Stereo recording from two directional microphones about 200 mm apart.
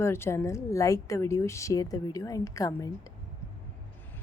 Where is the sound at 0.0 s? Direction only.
10° left (ahead or behind).